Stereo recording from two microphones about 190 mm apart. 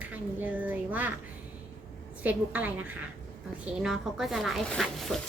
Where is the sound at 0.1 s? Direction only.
10° right (ahead or behind).